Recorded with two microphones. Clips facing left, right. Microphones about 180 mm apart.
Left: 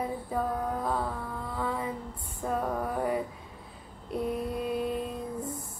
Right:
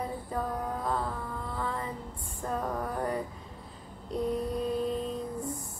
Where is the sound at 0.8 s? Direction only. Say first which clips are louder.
Right 1 dB; 5° left (ahead or behind).